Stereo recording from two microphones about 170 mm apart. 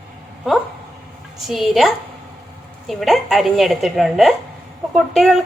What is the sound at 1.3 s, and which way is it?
A woman's voice, centre (ahead or behind).